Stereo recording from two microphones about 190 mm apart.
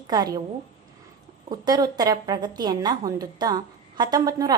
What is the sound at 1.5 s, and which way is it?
A woman's voice, 20° right (ahead or behind).